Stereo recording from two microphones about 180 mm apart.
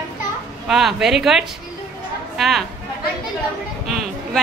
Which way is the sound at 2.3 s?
Centre (ahead or behind).